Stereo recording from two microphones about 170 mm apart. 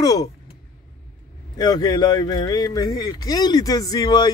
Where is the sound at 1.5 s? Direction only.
25° left (ahead or behind).